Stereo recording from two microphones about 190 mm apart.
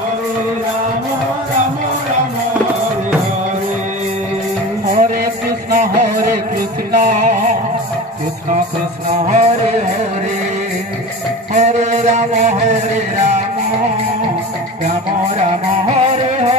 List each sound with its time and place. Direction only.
4.9 s music: 50° right (ahead or behind)
9.3 s music: 40° right (ahead or behind)
11.5 s music: 40° right (ahead or behind)